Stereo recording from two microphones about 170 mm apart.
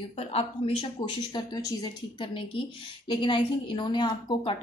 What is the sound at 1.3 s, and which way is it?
A woman's voice, 25° left (ahead or behind).